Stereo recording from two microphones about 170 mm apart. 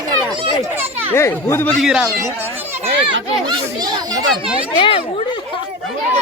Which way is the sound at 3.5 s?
25° right (ahead or behind).